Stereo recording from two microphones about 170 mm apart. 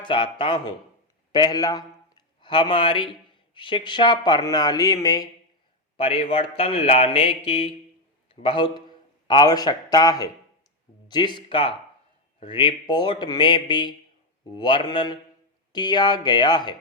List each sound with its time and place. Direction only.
0.0 s a man's voice: 30° left (ahead or behind)
6.0 s a man's voice: 35° left (ahead or behind)